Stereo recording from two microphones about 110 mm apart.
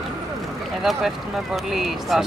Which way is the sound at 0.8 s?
Centre (ahead or behind).